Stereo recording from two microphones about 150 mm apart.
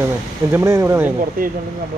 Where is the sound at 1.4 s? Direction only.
70° right (ahead or behind).